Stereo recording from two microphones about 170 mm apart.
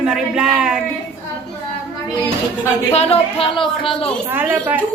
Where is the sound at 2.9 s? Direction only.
35° left (ahead or behind).